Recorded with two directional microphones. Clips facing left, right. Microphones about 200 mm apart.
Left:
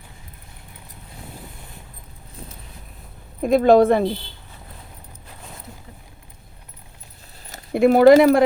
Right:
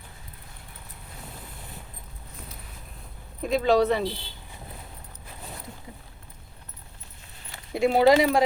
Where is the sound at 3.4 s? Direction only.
50° left (ahead or behind).